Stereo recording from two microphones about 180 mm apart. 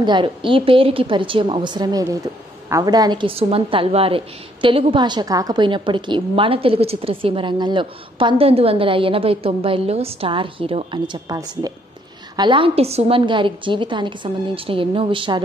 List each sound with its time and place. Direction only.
0.0 s a woman's voice: 25° right (ahead or behind)